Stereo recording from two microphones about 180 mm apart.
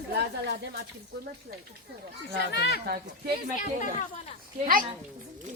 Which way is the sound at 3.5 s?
45° left (ahead or behind).